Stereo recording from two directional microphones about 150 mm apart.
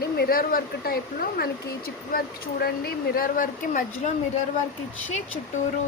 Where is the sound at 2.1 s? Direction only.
90° left; by 4.1 s 60° left (ahead or behind).